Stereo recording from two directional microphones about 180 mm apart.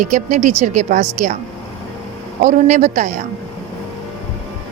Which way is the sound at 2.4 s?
40° right (ahead or behind).